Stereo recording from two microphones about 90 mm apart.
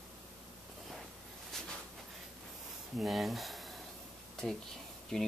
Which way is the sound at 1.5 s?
5° left (ahead or behind).